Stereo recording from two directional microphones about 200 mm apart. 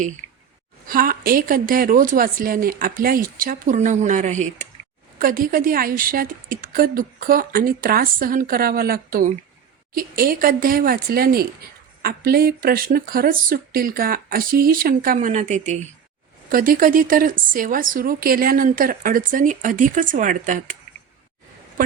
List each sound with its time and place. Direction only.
0.9 s speech: 45° right (ahead or behind)
16.5 s speech: 45° right (ahead or behind)